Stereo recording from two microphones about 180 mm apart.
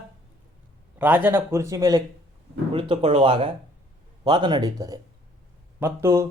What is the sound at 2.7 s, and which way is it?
Speech, 30° right (ahead or behind).